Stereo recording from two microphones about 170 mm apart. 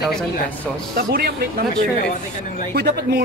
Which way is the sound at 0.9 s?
60° right (ahead or behind).